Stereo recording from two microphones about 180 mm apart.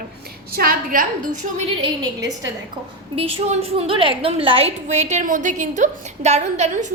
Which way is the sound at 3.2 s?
30° right (ahead or behind).